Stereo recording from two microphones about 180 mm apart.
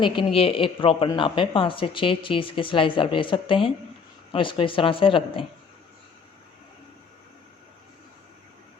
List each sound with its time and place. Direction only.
0.0 s speech: 30° left (ahead or behind)